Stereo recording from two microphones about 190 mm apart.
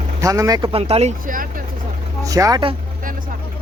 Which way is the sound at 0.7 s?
30° right (ahead or behind).